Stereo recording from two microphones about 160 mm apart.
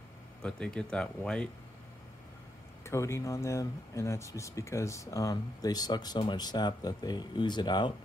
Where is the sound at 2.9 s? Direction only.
20° left (ahead or behind).